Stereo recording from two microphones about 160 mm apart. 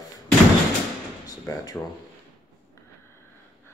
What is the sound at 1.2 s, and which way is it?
Speech, 25° left (ahead or behind).